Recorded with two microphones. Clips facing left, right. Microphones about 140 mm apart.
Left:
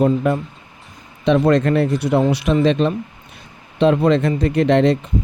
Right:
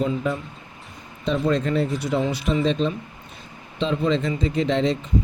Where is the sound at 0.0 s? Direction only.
60° left (ahead or behind).